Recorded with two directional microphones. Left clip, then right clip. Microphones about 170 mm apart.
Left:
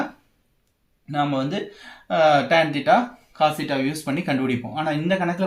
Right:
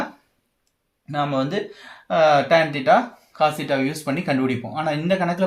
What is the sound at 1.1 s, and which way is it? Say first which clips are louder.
Speech: right 1 dB; 35° right (ahead or behind).